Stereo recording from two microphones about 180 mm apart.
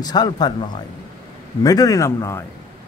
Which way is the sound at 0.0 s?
25° left (ahead or behind).